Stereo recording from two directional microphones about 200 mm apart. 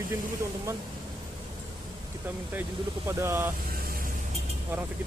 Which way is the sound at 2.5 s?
10° right (ahead or behind).